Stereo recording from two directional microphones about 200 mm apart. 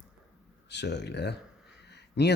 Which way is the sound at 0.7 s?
60° left (ahead or behind).